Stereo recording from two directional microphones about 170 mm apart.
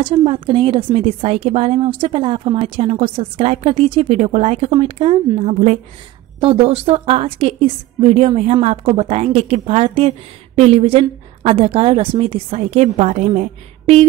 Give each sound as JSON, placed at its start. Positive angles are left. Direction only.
{"t": 0.0, "sound": "a woman's voice", "side_deg": -30}